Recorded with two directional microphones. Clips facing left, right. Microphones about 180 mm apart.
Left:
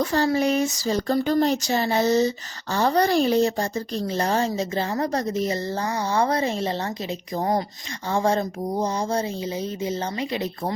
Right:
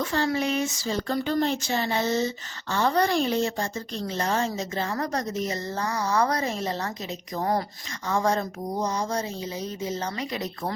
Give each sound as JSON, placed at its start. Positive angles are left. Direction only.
{"t": 0.0, "sound": "speech", "side_deg": 40}